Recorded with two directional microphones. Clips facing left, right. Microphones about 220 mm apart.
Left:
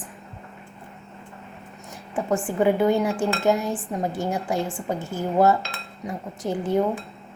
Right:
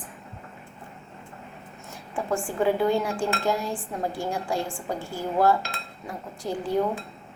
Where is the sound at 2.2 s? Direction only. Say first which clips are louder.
Left 3 dB; 20° left (ahead or behind).